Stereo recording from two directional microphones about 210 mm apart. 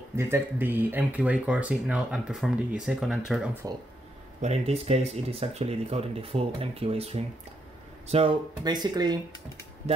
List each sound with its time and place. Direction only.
0.1 s speech: 10° right (ahead or behind)
3.6 s speech: 15° right (ahead or behind)
4.4 s speech: 30° right (ahead or behind)